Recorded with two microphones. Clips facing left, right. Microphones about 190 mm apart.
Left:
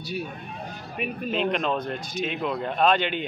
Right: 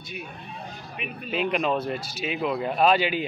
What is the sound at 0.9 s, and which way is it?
Speech, 45° left (ahead or behind).